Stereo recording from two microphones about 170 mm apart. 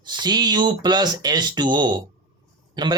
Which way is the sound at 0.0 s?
25° right (ahead or behind).